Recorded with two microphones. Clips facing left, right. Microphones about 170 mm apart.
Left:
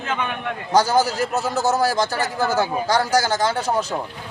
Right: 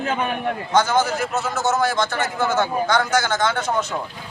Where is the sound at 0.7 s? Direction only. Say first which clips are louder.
Left 2 dB; 35° left (ahead or behind).